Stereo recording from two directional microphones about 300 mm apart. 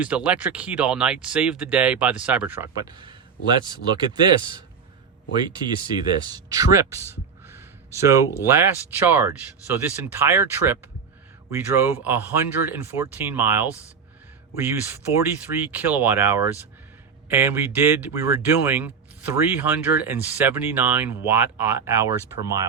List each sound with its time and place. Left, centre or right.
0.0 s speech: centre